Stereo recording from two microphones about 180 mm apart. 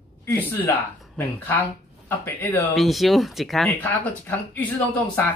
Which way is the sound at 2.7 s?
Centre (ahead or behind).